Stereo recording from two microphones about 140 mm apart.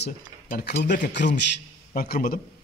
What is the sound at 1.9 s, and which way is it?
Speech, 90° left.